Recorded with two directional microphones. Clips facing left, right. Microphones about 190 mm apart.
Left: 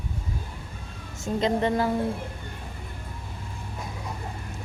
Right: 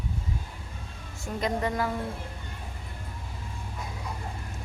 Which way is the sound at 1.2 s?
25° left (ahead or behind).